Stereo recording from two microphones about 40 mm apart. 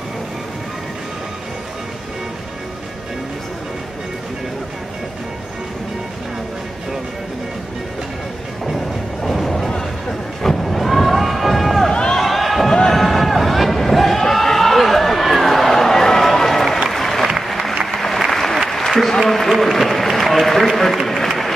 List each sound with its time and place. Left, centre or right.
8.6 s music: centre
10.4 s run: centre
11.9 s run: centre
12.2 s a sound: centre
16.9 s applause: centre
18.3 s applause: centre